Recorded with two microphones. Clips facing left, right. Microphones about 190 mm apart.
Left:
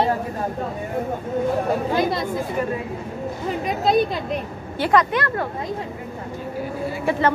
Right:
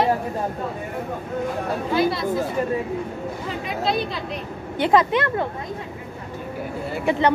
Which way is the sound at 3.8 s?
45° left (ahead or behind).